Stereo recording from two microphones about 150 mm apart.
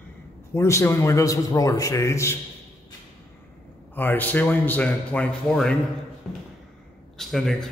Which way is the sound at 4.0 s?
10° left (ahead or behind).